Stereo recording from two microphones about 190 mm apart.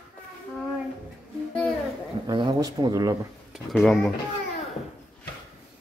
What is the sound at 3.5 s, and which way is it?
Speech, centre (ahead or behind).